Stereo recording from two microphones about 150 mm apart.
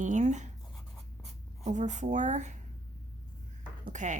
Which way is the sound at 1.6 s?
50° right (ahead or behind).